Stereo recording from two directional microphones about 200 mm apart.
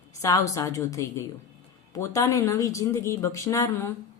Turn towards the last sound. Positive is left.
turn(degrees=15)  # may be behind; listen again after turning